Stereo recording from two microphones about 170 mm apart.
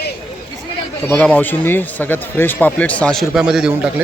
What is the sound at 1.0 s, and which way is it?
Speech, 10° left (ahead or behind).